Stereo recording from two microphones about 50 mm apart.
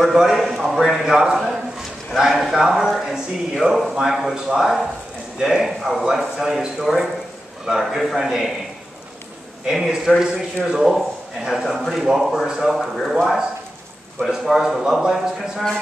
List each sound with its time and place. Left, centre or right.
0.1 s a man's voice: centre
9.7 s a man's voice: centre
10.9 s a man's voice: centre